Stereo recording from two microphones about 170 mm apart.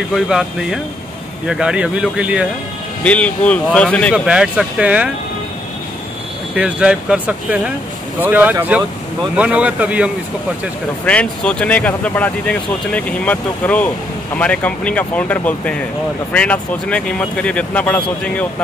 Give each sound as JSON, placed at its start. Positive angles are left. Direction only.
{"t": 0.1, "sound": "speech", "side_deg": 0}
{"t": 3.0, "sound": "speech", "side_deg": 10}
{"t": 4.1, "sound": "speech", "side_deg": -5}
{"t": 6.5, "sound": "speech", "side_deg": -5}
{"t": 11.1, "sound": "speech", "side_deg": 5}